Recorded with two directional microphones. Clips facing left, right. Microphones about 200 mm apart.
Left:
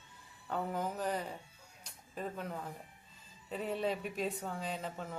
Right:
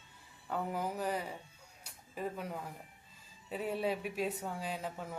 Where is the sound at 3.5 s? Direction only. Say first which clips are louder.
Right 1 dB; 5° right (ahead or behind).